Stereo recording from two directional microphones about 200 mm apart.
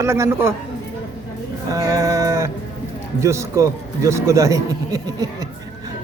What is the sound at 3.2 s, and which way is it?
Speech, 15° right (ahead or behind).